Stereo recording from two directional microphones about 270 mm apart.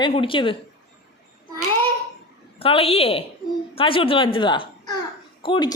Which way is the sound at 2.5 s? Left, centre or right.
Left.